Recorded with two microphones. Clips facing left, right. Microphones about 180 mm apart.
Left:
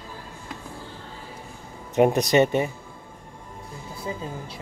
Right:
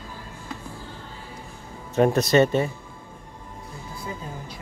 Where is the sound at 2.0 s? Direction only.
15° left (ahead or behind).